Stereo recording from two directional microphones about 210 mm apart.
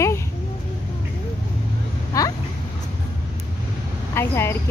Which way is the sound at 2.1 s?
15° left (ahead or behind).